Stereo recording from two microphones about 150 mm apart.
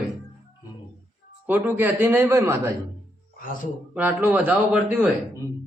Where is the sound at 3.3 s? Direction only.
65° left (ahead or behind).